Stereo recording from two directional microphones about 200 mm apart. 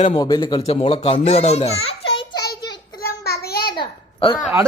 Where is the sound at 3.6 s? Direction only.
25° left (ahead or behind).